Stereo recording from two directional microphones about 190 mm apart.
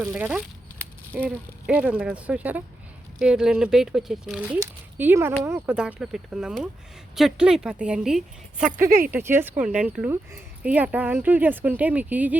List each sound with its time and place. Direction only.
0.0 s a sound: 10° right (ahead or behind)
1.6 s speech: 5° right (ahead or behind)
8.8 s speech: 50° right (ahead or behind)
9.1 s speech: 10° right (ahead or behind)